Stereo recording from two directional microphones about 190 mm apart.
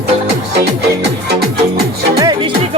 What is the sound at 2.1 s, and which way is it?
Music, 20° right (ahead or behind).